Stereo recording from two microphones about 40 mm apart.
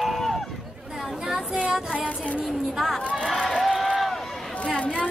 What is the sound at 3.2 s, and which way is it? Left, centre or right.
Run, centre.